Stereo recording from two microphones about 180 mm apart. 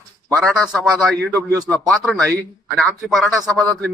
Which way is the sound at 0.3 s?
5° left (ahead or behind).